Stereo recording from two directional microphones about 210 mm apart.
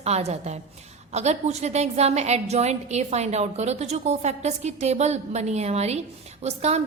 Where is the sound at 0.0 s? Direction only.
30° right (ahead or behind).